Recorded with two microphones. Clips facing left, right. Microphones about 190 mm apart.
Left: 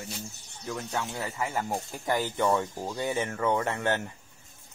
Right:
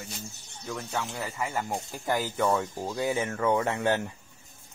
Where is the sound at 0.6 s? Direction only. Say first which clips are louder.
Even; centre (ahead or behind).